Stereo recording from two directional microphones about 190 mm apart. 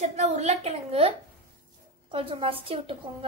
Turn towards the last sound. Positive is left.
turn(degrees=-30)  # may be behind; listen again after turning